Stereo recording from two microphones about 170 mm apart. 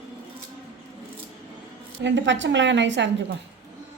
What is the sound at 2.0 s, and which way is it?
A woman's voice, 90° right.